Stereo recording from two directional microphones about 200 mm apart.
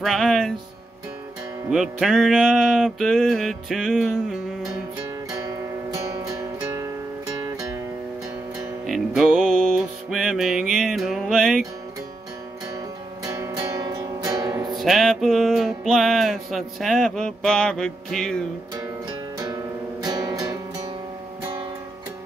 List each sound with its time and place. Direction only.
0.0 s music: centre (ahead or behind)
1.7 s music: centre (ahead or behind)
6.1 s music: 15° right (ahead or behind)
8.8 s music: centre (ahead or behind)
13.2 s music: 15° right (ahead or behind)
14.8 s music: centre (ahead or behind)
18.8 s music: 20° right (ahead or behind)